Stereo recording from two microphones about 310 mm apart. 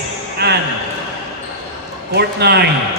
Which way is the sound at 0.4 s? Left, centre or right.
Right.